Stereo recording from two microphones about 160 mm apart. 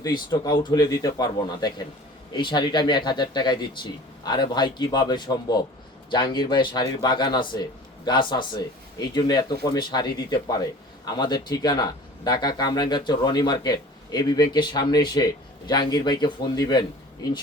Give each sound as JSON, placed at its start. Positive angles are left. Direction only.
{"t": 0.0, "sound": "speech", "side_deg": 25}